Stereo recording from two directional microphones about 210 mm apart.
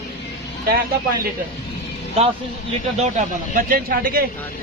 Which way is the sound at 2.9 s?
35° right (ahead or behind).